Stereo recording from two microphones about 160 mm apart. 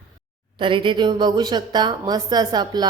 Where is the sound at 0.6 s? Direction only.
30° right (ahead or behind).